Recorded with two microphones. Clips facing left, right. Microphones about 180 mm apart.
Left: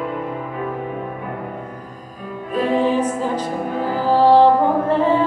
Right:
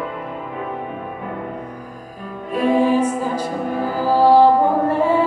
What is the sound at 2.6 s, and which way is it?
Music, 10° right (ahead or behind).